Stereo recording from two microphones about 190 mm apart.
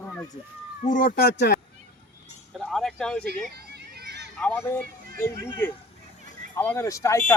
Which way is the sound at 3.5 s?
60° right (ahead or behind).